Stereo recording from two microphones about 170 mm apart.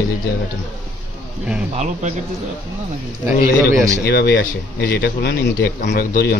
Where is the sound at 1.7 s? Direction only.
45° right (ahead or behind).